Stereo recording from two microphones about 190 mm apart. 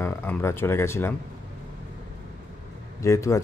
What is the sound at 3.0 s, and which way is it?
Speech, 15° left (ahead or behind).